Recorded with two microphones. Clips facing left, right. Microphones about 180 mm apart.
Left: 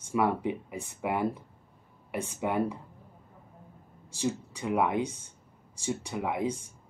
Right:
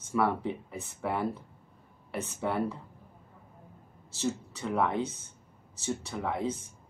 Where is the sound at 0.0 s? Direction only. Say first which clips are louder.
Left 1 dB; 15° left (ahead or behind).